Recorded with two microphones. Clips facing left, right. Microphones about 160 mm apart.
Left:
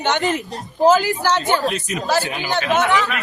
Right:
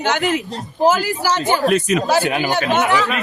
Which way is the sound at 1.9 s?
85° right.